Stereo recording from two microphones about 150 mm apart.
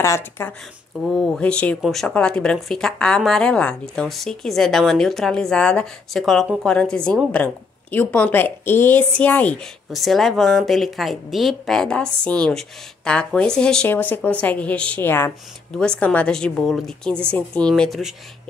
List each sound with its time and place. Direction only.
0.0 s a woman's voice: 15° left (ahead or behind)
1.0 s a woman's voice: centre (ahead or behind)